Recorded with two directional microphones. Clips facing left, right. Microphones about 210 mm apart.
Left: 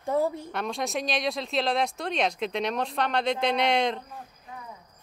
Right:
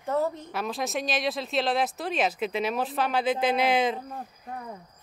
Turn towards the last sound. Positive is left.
turn(degrees=-50)  # may be behind; listen again after turning